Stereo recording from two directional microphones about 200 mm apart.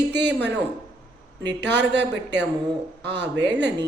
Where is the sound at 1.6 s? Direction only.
60° right (ahead or behind).